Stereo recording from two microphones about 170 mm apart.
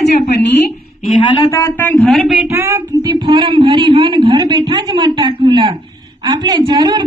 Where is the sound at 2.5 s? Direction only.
15° right (ahead or behind).